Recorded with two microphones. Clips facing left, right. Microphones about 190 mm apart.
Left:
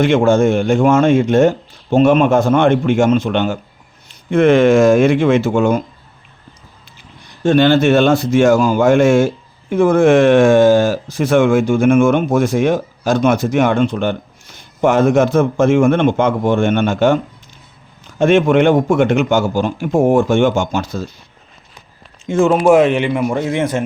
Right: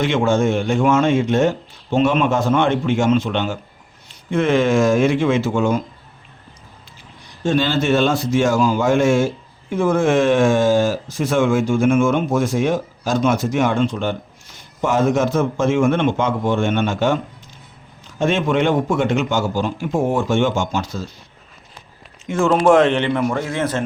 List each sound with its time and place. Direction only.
0.0 s a man's voice: 50° left (ahead or behind)
7.4 s a man's voice: 60° left (ahead or behind)
18.2 s speech: 55° left (ahead or behind)
22.3 s speech: 20° left (ahead or behind)
22.5 s a man's voice: 10° left (ahead or behind)